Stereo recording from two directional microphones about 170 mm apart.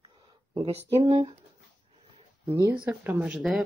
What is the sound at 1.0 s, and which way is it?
Speech, 30° right (ahead or behind).